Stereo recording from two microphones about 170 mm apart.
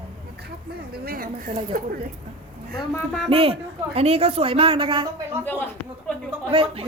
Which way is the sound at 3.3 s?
35° right (ahead or behind).